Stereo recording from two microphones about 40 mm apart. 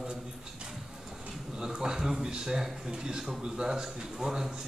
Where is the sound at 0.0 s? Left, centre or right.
Centre.